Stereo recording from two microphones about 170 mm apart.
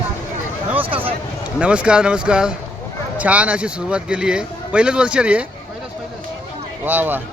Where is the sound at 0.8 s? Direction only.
30° right (ahead or behind).